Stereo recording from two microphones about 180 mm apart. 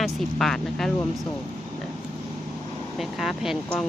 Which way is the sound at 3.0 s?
Centre (ahead or behind).